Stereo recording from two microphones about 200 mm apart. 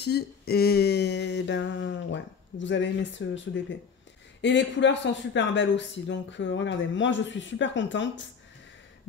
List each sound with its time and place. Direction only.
0.0 s speech: 55° left (ahead or behind)